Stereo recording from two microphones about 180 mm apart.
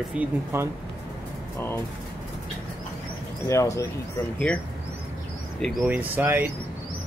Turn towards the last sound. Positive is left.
turn(degrees=-10)  # may be behind; listen again after turning